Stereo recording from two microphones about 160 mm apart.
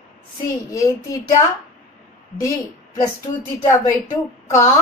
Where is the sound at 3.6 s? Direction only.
20° left (ahead or behind).